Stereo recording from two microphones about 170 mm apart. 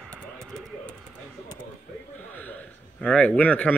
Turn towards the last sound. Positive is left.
turn(degrees=10)  # may be behind; listen again after turning